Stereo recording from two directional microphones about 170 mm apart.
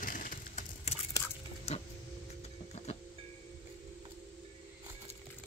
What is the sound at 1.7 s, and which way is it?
Printer, 40° left (ahead or behind).